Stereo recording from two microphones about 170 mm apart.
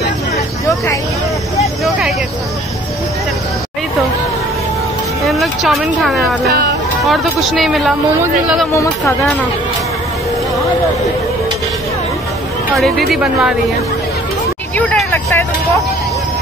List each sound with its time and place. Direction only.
5.2 s speech: centre (ahead or behind)
6.4 s speech: 65° right (ahead or behind)
7.1 s speech: centre (ahead or behind)
9.0 s speech: centre (ahead or behind)
12.7 s speech: centre (ahead or behind)
14.8 s speech: 10° left (ahead or behind)